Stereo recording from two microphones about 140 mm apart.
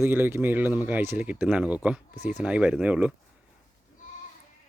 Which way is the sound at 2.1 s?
60° left (ahead or behind).